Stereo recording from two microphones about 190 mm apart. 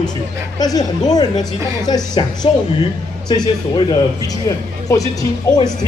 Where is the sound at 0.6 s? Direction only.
20° left (ahead or behind).